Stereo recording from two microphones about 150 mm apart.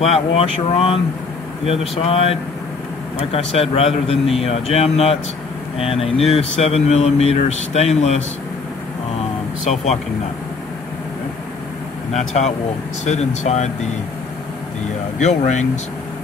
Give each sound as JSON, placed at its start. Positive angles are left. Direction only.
{"t": 0.0, "sound": "a man's voice", "side_deg": 45}
{"t": 12.1, "sound": "speech", "side_deg": 50}
{"t": 15.1, "sound": "speech", "side_deg": 50}